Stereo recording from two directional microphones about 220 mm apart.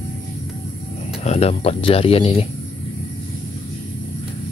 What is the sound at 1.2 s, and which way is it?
Speech, 30° left (ahead or behind).